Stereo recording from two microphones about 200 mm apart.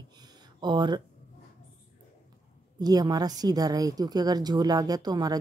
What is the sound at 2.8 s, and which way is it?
A woman's voice, 20° right (ahead or behind).